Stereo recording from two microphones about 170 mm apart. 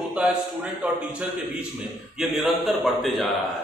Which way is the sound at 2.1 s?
Centre (ahead or behind).